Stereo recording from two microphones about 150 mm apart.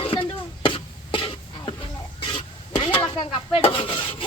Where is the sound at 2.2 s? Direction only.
35° left (ahead or behind).